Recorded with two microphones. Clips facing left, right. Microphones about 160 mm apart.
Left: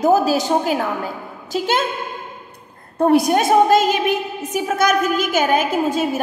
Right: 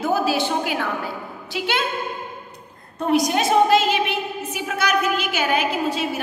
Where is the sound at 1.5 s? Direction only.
45° left (ahead or behind).